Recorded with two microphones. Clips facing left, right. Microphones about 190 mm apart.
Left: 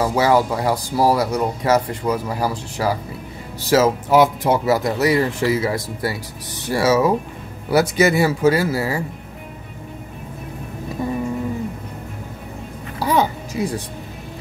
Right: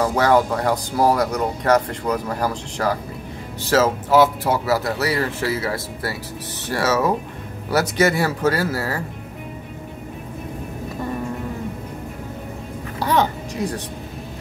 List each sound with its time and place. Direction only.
0.0 s speech: 10° left (ahead or behind)
13.0 s music: 10° left (ahead or behind)